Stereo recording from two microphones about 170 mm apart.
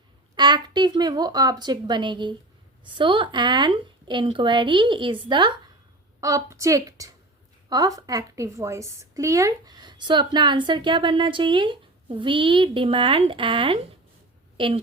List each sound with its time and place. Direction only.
0.3 s a woman's voice: 25° right (ahead or behind)